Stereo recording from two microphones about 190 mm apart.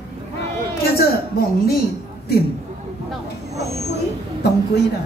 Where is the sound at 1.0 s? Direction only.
55° left (ahead or behind).